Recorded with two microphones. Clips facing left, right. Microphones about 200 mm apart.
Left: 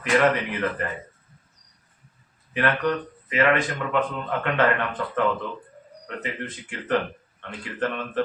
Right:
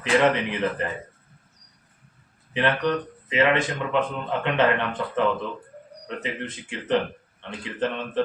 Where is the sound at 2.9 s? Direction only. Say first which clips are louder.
Right 1 dB; 20° right (ahead or behind).